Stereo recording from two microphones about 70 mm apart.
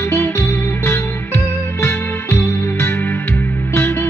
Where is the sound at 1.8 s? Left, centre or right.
Left.